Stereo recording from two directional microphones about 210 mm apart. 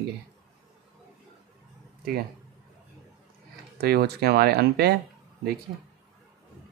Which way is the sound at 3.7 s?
50° right (ahead or behind).